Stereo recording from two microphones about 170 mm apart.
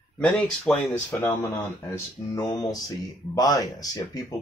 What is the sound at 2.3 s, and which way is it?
Speech, 25° left (ahead or behind).